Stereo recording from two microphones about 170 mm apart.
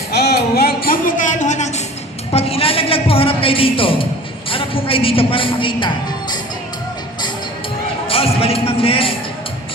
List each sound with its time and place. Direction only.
0.1 s a sound: 70° left (ahead or behind); by 4.0 s 30° left (ahead or behind)
4.4 s a woman's voice: 30° left (ahead or behind)
8.0 s speech: 35° left (ahead or behind)